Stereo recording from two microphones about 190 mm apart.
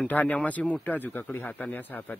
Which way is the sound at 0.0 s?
10° left (ahead or behind).